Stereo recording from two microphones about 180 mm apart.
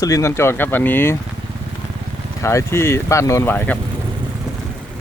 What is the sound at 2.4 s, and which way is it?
Speech, 15° left (ahead or behind).